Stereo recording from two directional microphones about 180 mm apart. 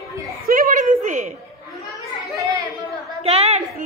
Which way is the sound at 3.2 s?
35° right (ahead or behind).